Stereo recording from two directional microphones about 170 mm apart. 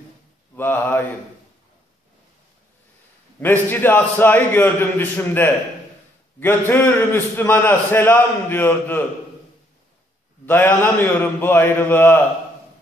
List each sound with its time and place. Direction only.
0.6 s a man's voice: 10° left (ahead or behind)
3.3 s a man's voice: 10° left (ahead or behind)
10.4 s a man's voice: 10° left (ahead or behind)